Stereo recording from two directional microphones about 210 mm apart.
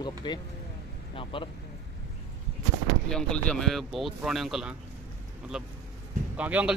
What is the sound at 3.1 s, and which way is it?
Speech, 5° left (ahead or behind).